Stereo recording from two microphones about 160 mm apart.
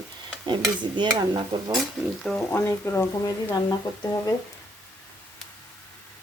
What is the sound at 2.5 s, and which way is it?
Speech, 15° left (ahead or behind).